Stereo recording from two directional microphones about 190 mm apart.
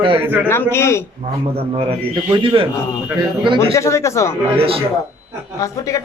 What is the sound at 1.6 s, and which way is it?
A man's voice, 30° right (ahead or behind).